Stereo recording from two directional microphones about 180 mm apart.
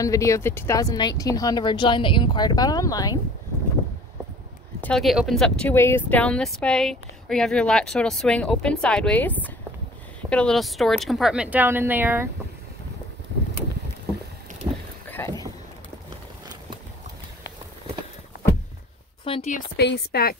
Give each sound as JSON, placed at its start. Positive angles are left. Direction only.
{"t": 0.0, "sound": "speech", "side_deg": 15}
{"t": 4.8, "sound": "speech", "side_deg": 0}
{"t": 14.7, "sound": "a sound", "side_deg": -20}
{"t": 15.0, "sound": "a sound", "side_deg": 15}
{"t": 19.2, "sound": "speech", "side_deg": 30}
{"t": 19.8, "sound": "speech", "side_deg": 65}